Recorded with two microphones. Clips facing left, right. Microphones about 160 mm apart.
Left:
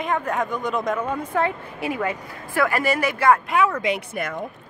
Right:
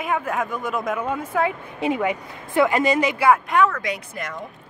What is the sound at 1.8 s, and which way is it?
Speech, 20° right (ahead or behind).